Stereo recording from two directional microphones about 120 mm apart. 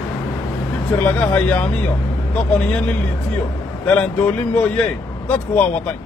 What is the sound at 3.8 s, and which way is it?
Speech, 10° left (ahead or behind).